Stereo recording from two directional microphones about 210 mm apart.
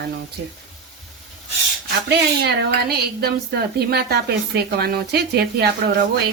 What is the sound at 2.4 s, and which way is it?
A woman's voice, 50° right (ahead or behind).